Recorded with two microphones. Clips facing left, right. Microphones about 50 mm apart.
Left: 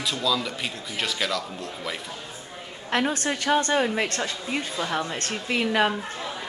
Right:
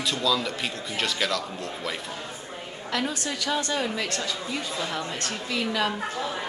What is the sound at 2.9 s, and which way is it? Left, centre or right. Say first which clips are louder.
A woman's voice: left 4 dB; left.